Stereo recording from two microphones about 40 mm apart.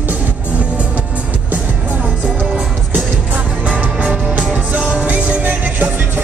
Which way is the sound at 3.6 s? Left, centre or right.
Right.